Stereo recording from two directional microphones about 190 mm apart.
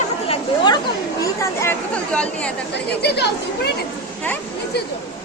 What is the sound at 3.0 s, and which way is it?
Speech, 60° left (ahead or behind).